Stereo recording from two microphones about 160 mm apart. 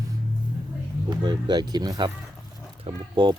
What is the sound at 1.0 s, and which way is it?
Speech, 25° right (ahead or behind).